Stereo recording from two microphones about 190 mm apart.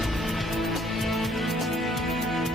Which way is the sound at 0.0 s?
Centre (ahead or behind).